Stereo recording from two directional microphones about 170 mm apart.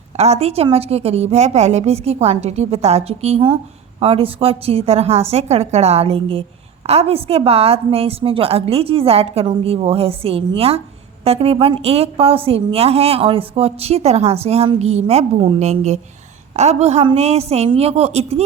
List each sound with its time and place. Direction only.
0.2 s a woman's voice: 40° right (ahead or behind)